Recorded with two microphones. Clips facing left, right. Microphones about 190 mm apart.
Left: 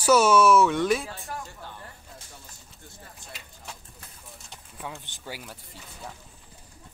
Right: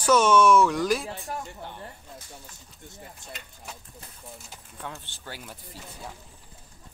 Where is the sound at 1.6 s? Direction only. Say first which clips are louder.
Right 3 dB; 25° right (ahead or behind).